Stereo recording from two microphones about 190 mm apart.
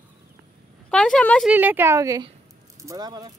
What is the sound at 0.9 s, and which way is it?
Speech, 5° left (ahead or behind).